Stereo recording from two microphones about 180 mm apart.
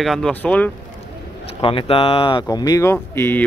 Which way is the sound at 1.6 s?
30° left (ahead or behind).